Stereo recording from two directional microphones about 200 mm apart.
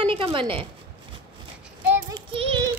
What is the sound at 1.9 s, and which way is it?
Child singing, 20° right (ahead or behind).